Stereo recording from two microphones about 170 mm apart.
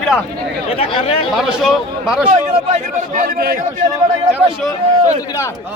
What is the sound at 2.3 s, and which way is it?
A man's voice, 45° right (ahead or behind).